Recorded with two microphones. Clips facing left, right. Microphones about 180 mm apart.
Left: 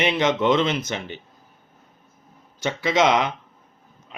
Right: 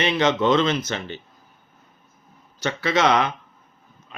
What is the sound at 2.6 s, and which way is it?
Speech, 15° left (ahead or behind).